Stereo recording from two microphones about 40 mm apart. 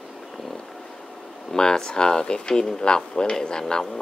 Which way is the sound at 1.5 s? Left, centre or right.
Centre.